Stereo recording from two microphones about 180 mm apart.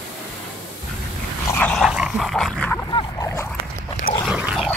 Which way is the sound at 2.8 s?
20° left (ahead or behind).